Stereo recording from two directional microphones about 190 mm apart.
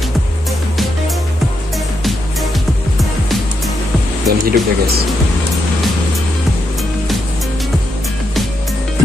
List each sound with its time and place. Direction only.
3.0 s music: centre (ahead or behind)
4.3 s speech: 55° right (ahead or behind)